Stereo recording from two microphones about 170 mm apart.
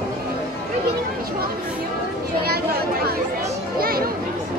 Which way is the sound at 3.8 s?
60° right (ahead or behind).